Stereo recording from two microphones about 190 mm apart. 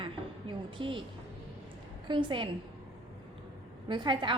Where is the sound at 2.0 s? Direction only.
25° right (ahead or behind).